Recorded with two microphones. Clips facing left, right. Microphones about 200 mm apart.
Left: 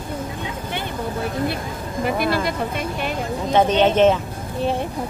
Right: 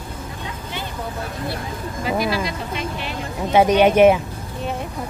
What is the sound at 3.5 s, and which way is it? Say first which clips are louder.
Speech: right 2 dB; 10° right (ahead or behind).